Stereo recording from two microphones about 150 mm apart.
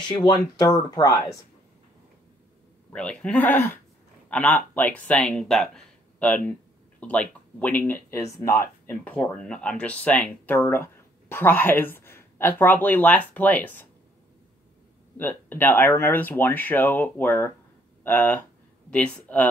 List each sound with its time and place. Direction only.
0.1 s speech: 30° left (ahead or behind)
2.9 s speech: 5° left (ahead or behind)
15.1 s speech: 10° left (ahead or behind)